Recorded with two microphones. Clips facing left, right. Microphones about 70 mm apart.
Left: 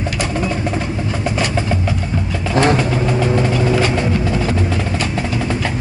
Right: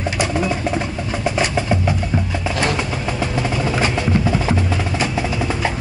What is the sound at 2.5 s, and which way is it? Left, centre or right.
Vehicle, left.